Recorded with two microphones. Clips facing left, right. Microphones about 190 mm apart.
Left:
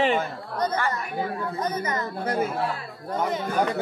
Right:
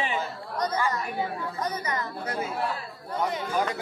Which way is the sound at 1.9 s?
50° left (ahead or behind).